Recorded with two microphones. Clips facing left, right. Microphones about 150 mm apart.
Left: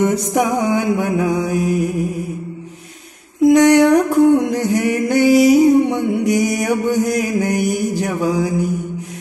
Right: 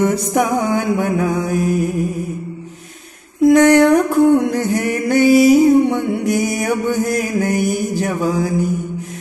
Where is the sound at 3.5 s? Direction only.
15° left (ahead or behind).